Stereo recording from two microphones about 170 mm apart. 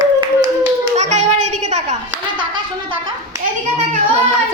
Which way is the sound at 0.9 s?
45° right (ahead or behind).